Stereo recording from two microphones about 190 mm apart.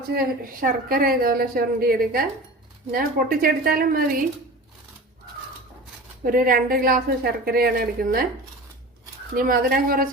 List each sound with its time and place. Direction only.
0.1 s a woman's voice: 50° right (ahead or behind)
6.2 s a woman's voice: 50° right (ahead or behind)
9.3 s a woman's voice: 50° right (ahead or behind)